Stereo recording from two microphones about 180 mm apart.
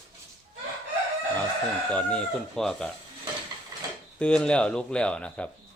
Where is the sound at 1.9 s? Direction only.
5° left (ahead or behind).